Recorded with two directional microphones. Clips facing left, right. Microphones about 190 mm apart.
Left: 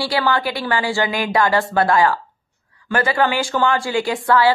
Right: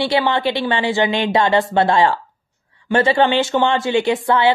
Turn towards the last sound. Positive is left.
turn(degrees=-20)  # may be behind; listen again after turning